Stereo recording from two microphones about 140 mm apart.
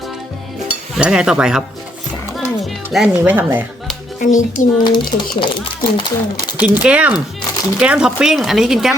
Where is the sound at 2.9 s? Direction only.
5° right (ahead or behind).